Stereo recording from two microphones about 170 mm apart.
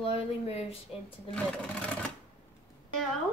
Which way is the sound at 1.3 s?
5° left (ahead or behind).